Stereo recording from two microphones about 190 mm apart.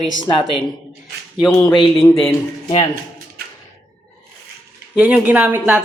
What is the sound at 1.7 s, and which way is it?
Speech, 25° left (ahead or behind).